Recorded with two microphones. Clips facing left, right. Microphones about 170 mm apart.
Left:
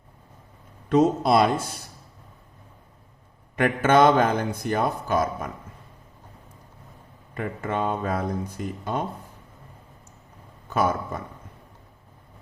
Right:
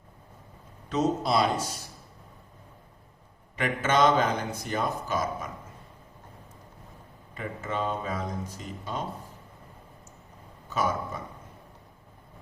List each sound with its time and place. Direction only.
0.9 s a man's voice: 55° left (ahead or behind)
3.5 s a man's voice: 55° left (ahead or behind)
7.3 s a man's voice: 55° left (ahead or behind)
10.7 s a man's voice: 55° left (ahead or behind)